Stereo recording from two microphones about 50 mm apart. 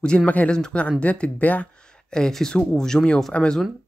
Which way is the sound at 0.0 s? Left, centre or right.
Centre.